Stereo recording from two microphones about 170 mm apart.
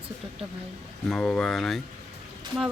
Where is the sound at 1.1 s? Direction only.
5° left (ahead or behind).